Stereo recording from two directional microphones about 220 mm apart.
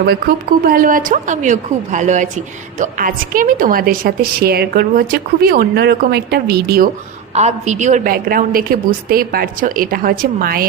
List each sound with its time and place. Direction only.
0.6 s a woman's voice: 40° right (ahead or behind)
7.3 s a woman's voice: 30° right (ahead or behind)